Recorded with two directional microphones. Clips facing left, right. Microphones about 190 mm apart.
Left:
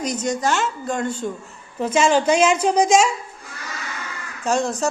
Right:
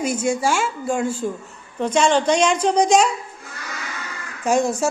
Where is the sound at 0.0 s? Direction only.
10° right (ahead or behind).